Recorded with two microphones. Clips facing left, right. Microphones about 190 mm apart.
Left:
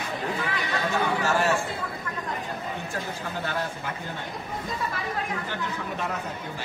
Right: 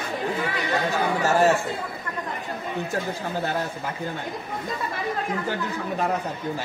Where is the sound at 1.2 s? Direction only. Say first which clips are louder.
Right 7 dB; 40° right (ahead or behind).